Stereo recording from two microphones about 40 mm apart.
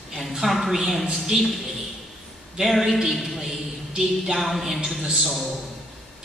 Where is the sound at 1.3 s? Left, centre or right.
Right.